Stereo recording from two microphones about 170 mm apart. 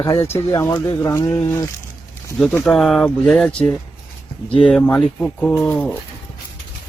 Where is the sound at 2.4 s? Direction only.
Centre (ahead or behind).